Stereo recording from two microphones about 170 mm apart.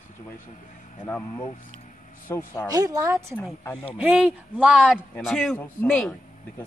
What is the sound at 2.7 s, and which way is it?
Speech, 20° right (ahead or behind).